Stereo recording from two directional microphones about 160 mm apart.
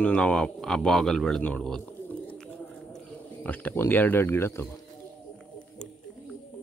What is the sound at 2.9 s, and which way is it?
Speech, 5° left (ahead or behind).